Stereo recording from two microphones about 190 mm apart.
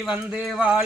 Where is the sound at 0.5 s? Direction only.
5° right (ahead or behind).